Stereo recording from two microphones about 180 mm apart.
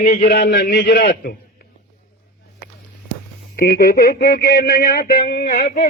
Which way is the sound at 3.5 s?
55° left (ahead or behind).